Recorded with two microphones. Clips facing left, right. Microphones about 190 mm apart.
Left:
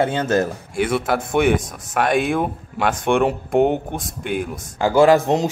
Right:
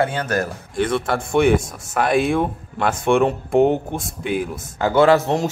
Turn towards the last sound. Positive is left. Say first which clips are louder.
# left 1 dB
turn(degrees=15)  # may be behind; listen again after turning